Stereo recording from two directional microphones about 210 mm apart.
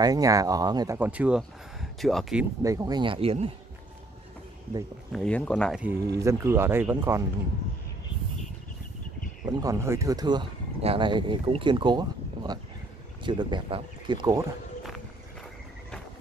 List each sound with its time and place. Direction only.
0.0 s speech: 15° right (ahead or behind)
0.9 s speech: 5° right (ahead or behind)
2.6 s speech: 15° right (ahead or behind)
5.1 s speech: 5° left (ahead or behind); by 7.2 s 10° right (ahead or behind)
9.5 s speech: 15° right (ahead or behind)